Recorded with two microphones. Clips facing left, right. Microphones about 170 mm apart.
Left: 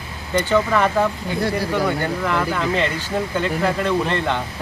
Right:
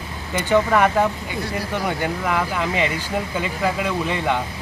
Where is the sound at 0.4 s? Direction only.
10° right (ahead or behind).